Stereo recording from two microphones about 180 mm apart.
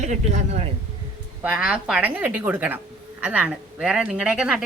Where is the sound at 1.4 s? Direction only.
5° right (ahead or behind).